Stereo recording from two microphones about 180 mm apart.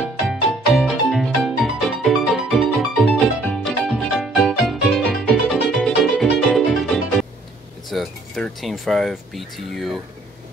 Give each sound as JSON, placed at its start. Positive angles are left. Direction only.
{"t": 0.3, "sound": "music", "side_deg": 0}
{"t": 7.9, "sound": "speech", "side_deg": 0}